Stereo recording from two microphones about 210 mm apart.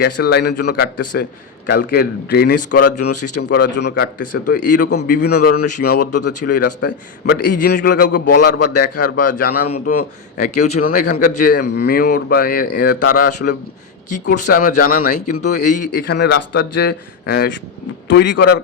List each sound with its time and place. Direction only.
0.0 s a man's voice: 50° left (ahead or behind)
2.8 s speech: 90° left
3.4 s a man's voice: 55° left (ahead or behind)
6.0 s speech: 90° left
6.4 s a man's voice: 45° left (ahead or behind)
9.8 s a man's voice: 45° left (ahead or behind)